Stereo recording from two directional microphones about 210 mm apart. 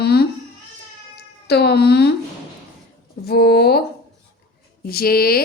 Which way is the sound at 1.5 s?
50° left (ahead or behind).